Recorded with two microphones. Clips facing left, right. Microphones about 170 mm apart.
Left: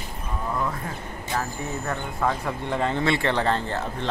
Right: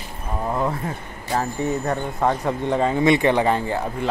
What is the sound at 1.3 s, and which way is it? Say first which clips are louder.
Speech: right 7 dB; 30° right (ahead or behind).